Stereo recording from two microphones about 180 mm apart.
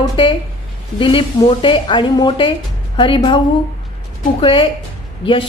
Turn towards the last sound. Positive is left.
turn(degrees=30)  # may be behind; listen again after turning